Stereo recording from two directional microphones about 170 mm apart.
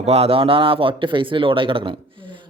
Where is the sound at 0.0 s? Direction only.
35° right (ahead or behind).